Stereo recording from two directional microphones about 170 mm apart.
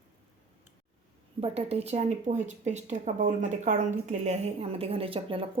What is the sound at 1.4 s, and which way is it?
Speech, 35° right (ahead or behind).